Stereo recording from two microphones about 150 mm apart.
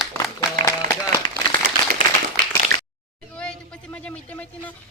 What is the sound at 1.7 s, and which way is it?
Clapping, 90° right.